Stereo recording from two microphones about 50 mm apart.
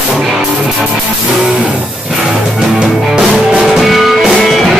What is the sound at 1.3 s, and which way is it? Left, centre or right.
Music, centre.